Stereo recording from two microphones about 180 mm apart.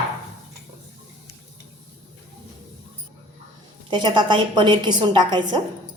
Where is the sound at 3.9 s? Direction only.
25° right (ahead or behind).